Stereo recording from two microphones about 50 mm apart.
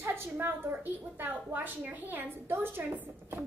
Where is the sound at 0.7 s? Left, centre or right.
Right.